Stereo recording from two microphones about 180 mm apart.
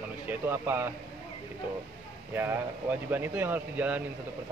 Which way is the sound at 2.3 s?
10° right (ahead or behind).